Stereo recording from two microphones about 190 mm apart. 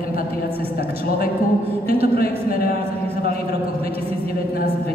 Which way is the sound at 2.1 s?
50° left (ahead or behind).